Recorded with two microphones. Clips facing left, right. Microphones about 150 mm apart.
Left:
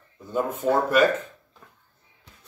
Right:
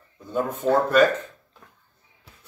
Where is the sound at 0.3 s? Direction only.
5° left (ahead or behind).